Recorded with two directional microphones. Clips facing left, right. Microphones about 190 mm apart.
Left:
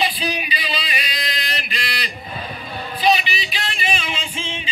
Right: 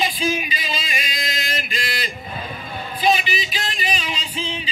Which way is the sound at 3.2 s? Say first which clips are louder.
Right 1 dB; 45° right (ahead or behind).